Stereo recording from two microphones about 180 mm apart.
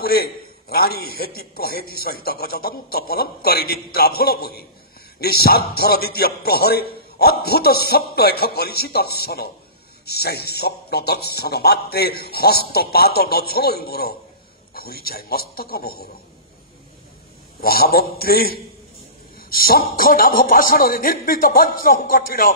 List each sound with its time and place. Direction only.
0.0 s a man's voice: 60° left (ahead or behind)
17.6 s a man's voice: 55° left (ahead or behind)